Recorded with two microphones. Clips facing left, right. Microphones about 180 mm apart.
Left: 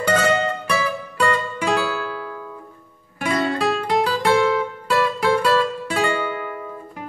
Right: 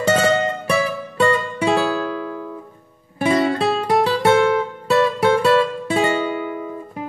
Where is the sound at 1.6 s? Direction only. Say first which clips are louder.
Right 4 dB; 25° right (ahead or behind).